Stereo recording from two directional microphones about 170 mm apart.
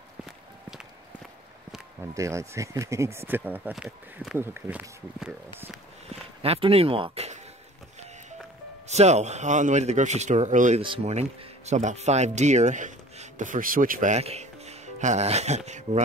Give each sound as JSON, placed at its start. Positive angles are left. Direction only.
{"t": 2.0, "sound": "speech", "side_deg": -15}
{"t": 6.0, "sound": "speech", "side_deg": -35}
{"t": 8.8, "sound": "speech", "side_deg": -40}
{"t": 10.8, "sound": "speech", "side_deg": -35}